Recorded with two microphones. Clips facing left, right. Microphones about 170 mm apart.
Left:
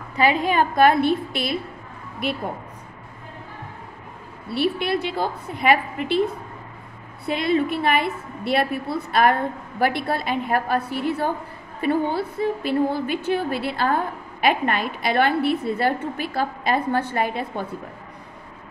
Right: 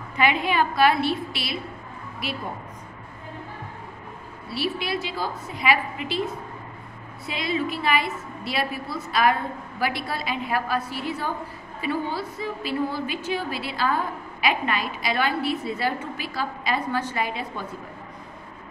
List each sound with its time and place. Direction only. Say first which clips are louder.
0.1 s a woman's voice: left 3 dB; 40° left (ahead or behind); by 2.4 s 55° left (ahead or behind)
4.5 s a woman's voice: left 5 dB; 55° left (ahead or behind)